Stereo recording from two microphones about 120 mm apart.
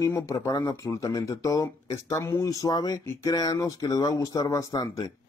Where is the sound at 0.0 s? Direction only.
25° left (ahead or behind).